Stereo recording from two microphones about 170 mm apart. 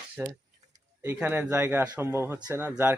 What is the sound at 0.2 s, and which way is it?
Speech, 15° right (ahead or behind).